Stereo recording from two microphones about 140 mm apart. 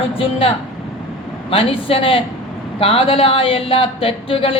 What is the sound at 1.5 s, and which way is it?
A man's voice, 40° left (ahead or behind).